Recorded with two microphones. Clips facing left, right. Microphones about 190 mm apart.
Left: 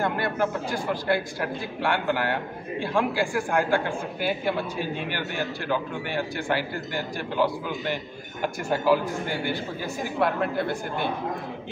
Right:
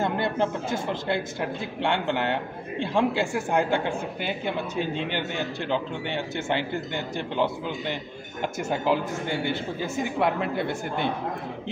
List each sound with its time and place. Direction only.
0.0 s a man's voice: 20° right (ahead or behind)